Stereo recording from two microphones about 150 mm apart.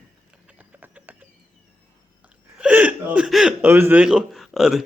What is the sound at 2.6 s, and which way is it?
Speech, 10° right (ahead or behind).